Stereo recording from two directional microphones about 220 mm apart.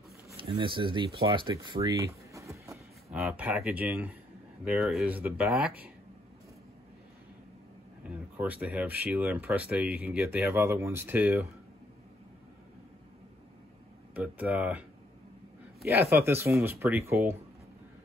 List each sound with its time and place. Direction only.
0.3 s speech: 20° right (ahead or behind); by 5.9 s 5° right (ahead or behind)
8.0 s speech: 5° right (ahead or behind)
14.1 s speech: 5° right (ahead or behind)
16.0 s speech: 10° right (ahead or behind)